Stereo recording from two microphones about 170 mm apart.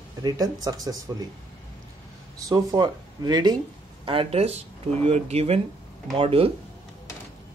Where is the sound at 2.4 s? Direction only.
20° right (ahead or behind).